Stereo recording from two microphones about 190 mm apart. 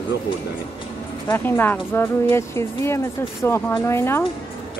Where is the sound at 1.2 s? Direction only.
10° left (ahead or behind).